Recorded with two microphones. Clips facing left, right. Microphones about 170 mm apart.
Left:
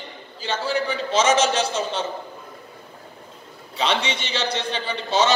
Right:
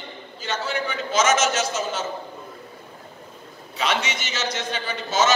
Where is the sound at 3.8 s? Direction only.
30° left (ahead or behind).